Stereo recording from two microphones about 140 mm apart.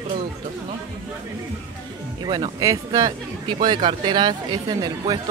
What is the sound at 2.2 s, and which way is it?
Speech, 30° right (ahead or behind).